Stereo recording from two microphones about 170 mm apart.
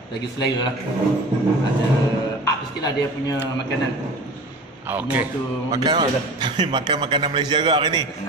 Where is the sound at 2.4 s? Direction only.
20° left (ahead or behind).